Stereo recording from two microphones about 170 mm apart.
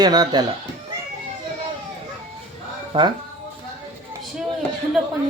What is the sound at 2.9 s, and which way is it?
Speech, 30° right (ahead or behind).